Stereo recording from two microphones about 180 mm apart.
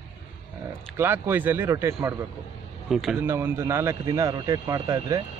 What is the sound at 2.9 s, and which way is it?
Speech, centre (ahead or behind).